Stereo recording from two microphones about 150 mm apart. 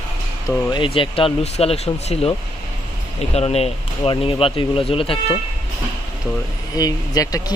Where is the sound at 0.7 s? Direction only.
35° left (ahead or behind).